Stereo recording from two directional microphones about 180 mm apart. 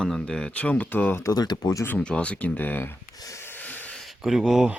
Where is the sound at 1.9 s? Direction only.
5° left (ahead or behind).